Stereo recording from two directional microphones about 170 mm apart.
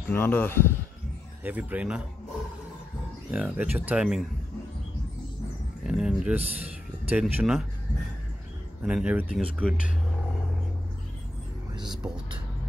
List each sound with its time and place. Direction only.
0.1 s speech: 10° left (ahead or behind)
1.4 s speech: 10° right (ahead or behind)
3.3 s speech: 10° right (ahead or behind)
5.9 s speech: 5° right (ahead or behind)
8.8 s speech: 5° right (ahead or behind)
11.7 s whispering: 25° right (ahead or behind)